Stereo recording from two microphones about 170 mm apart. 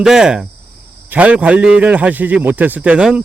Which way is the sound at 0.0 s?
5° right (ahead or behind).